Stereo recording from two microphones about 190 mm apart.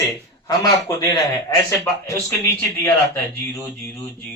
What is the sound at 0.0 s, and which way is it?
A man's voice, 20° left (ahead or behind).